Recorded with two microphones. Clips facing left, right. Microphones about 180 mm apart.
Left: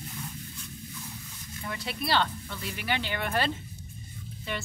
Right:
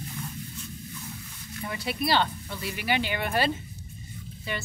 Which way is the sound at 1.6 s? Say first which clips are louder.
Right 4 dB; 10° right (ahead or behind).